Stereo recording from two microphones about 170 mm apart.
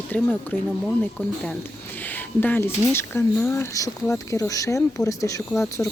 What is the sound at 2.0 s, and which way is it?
Speech, 10° left (ahead or behind).